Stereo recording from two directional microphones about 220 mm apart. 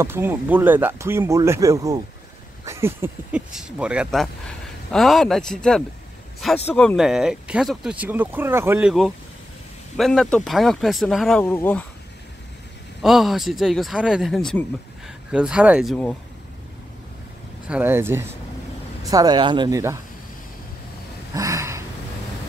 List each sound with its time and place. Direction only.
0.0 s speech: 10° right (ahead or behind); by 11.8 s 10° left (ahead or behind)
13.0 s speech: centre (ahead or behind)
17.6 s speech: 10° right (ahead or behind)
21.4 s a sound: 15° right (ahead or behind)